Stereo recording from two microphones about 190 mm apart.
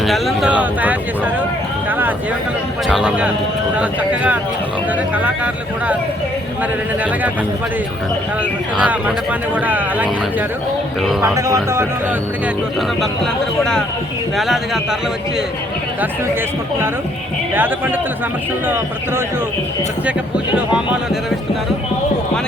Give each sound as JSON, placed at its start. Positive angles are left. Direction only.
{"t": 0.0, "sound": "speech", "side_deg": 0}
{"t": 1.9, "sound": "a sound", "side_deg": -10}
{"t": 2.8, "sound": "speech", "side_deg": 0}
{"t": 8.8, "sound": "speech", "side_deg": -10}
{"t": 11.3, "sound": "speech", "side_deg": -15}
{"t": 14.3, "sound": "speech", "side_deg": 0}
{"t": 17.5, "sound": "speech", "side_deg": -10}
{"t": 20.6, "sound": "speech", "side_deg": -5}